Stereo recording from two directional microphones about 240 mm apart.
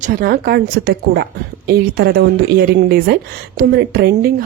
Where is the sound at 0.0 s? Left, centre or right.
Right.